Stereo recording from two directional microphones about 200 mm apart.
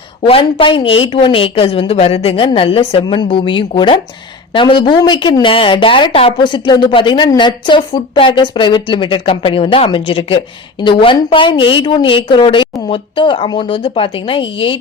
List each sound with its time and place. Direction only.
0.2 s a woman's voice: 25° left (ahead or behind)